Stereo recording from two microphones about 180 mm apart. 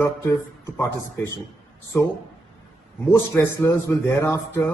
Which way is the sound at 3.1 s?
15° left (ahead or behind).